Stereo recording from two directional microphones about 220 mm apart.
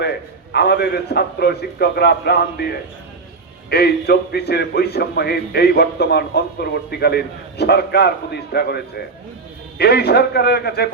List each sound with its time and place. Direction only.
0.5 s a man's voice: 50° left (ahead or behind)